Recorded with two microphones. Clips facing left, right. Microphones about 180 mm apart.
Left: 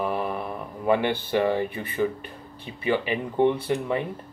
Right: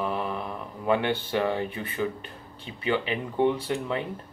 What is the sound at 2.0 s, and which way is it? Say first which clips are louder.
Speech: left 5 dB; 55° left (ahead or behind).